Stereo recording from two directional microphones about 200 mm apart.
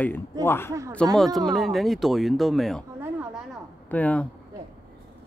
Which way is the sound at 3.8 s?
10° left (ahead or behind).